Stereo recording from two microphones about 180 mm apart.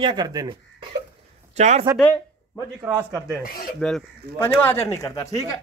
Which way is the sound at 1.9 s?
10° left (ahead or behind).